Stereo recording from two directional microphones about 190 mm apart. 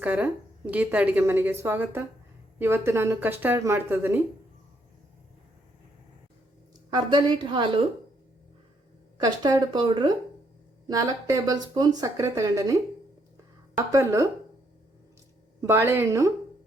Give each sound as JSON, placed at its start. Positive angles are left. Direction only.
{"t": 0.0, "sound": "a woman's voice", "side_deg": -10}
{"t": 6.9, "sound": "speech", "side_deg": -25}
{"t": 9.1, "sound": "speech", "side_deg": -20}
{"t": 13.3, "sound": "a sound", "side_deg": -20}
{"t": 15.6, "sound": "a woman's voice", "side_deg": -15}